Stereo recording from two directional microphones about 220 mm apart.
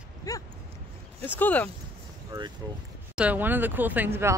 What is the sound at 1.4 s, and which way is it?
Speech, 5° left (ahead or behind).